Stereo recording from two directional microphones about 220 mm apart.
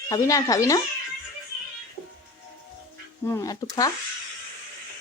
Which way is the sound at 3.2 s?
15° left (ahead or behind).